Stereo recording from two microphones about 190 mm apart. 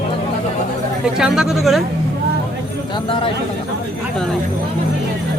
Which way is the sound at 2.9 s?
25° left (ahead or behind).